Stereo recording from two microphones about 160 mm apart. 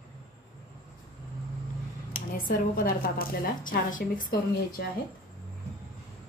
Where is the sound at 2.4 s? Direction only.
65° left (ahead or behind).